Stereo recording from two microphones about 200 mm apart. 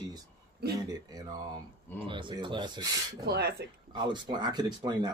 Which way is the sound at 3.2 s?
55° right (ahead or behind).